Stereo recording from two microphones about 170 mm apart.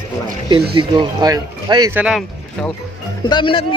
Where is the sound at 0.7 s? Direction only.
30° right (ahead or behind).